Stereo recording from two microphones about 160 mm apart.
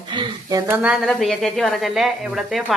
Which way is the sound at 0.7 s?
5° right (ahead or behind).